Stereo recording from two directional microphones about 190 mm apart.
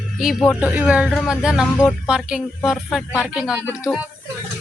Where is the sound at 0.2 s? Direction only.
Centre (ahead or behind).